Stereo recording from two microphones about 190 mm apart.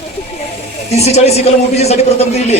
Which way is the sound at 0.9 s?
35° left (ahead or behind).